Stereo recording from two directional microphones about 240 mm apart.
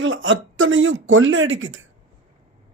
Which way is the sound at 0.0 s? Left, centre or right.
Right.